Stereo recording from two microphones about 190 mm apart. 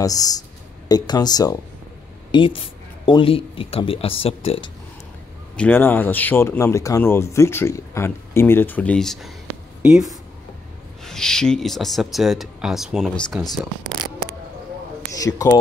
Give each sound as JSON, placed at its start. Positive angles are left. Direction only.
{"t": 0.0, "sound": "speech", "side_deg": 20}
{"t": 5.6, "sound": "speech", "side_deg": 10}
{"t": 9.8, "sound": "a sound", "side_deg": -5}
{"t": 11.1, "sound": "speech", "side_deg": 5}
{"t": 15.1, "sound": "speech", "side_deg": 15}